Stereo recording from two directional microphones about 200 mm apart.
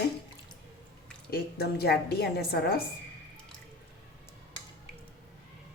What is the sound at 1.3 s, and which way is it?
A woman's voice, 50° left (ahead or behind).